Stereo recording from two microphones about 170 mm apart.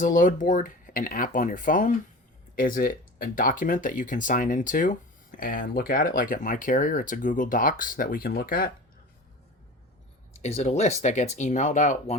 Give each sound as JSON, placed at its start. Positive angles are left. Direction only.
{"t": 0.0, "sound": "speech", "side_deg": 50}
{"t": 10.4, "sound": "speech", "side_deg": 40}